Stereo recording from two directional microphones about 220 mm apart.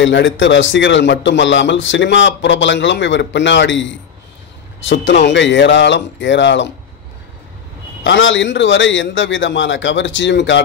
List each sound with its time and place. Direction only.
0.0 s a man's voice: 55° left (ahead or behind)
8.0 s a man's voice: 60° left (ahead or behind)